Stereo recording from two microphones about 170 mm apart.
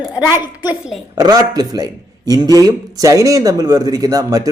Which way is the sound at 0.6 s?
5° right (ahead or behind).